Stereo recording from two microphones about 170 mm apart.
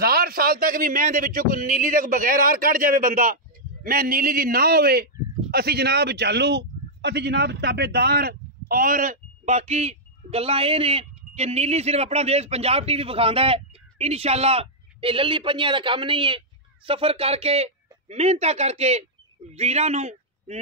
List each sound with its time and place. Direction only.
0.0 s a man's voice: 65° right (ahead or behind); by 20.5 s 40° right (ahead or behind)